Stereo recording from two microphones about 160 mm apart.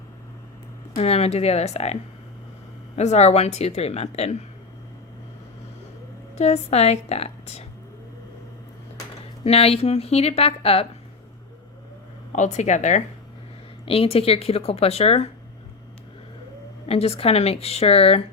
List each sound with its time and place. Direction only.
0.9 s a woman's voice: 40° left (ahead or behind)
6.3 s a woman's voice: 45° left (ahead or behind)
9.4 s a woman's voice: 40° left (ahead or behind)
12.3 s speech: 50° left (ahead or behind)
13.8 s a woman's voice: 35° left (ahead or behind)
16.9 s a woman's voice: 40° left (ahead or behind)